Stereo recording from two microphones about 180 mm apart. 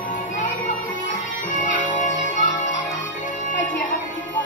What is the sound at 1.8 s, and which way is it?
Music, 45° left (ahead or behind).